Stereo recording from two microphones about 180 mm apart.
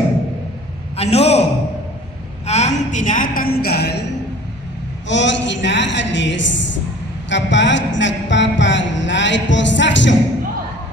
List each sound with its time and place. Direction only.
0.9 s a man's voice: 35° left (ahead or behind)
2.4 s a woman's voice: 40° left (ahead or behind); by 4.0 s 65° left (ahead or behind)
5.0 s a woman's voice: 90° left
7.2 s a sound: 85° left